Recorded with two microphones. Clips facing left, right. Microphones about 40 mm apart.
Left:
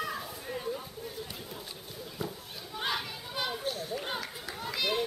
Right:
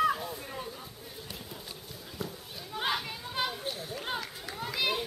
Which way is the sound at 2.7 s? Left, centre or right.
Centre.